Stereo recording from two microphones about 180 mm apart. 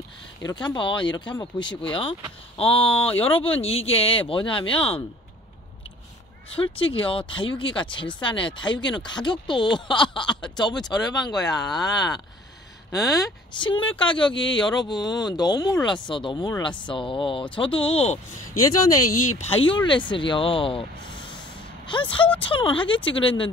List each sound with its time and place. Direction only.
0.5 s speech: 25° left (ahead or behind)
6.5 s speech: 30° left (ahead or behind)
14.3 s a man's voice: 90° left
14.8 s speech: 25° left (ahead or behind)
19.3 s speech: 35° left (ahead or behind)